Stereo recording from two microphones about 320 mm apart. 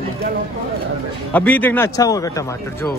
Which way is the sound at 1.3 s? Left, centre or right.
Centre.